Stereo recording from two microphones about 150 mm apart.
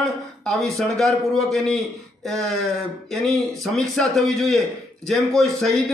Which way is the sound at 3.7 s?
Centre (ahead or behind).